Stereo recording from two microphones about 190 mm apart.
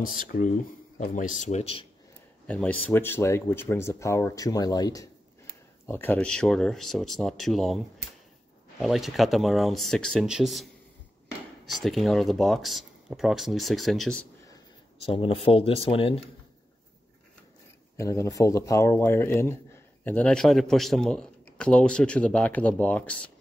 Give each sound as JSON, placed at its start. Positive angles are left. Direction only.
{"t": 0.0, "sound": "speech", "side_deg": 45}
{"t": 2.4, "sound": "a man's voice", "side_deg": 5}
{"t": 15.0, "sound": "speech", "side_deg": 30}
{"t": 17.9, "sound": "a man's voice", "side_deg": 15}